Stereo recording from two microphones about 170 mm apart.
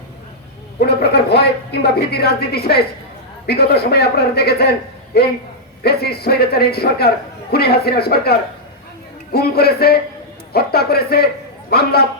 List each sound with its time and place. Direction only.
0.8 s a woman's voice: 70° left (ahead or behind)